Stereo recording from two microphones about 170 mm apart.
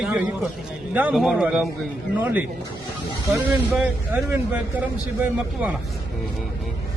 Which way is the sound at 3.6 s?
10° right (ahead or behind).